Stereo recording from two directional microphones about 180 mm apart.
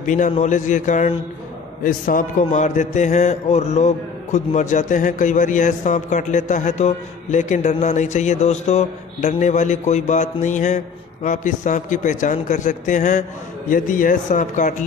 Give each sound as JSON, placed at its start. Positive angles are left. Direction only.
{"t": 0.0, "sound": "a man's voice", "side_deg": 45}